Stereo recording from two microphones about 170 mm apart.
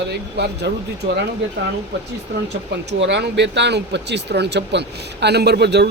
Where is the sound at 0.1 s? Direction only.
80° right.